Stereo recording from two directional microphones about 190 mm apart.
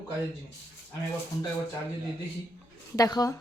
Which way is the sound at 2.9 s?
20° left (ahead or behind).